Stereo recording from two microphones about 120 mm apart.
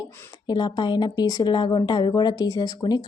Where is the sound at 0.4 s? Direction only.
40° left (ahead or behind).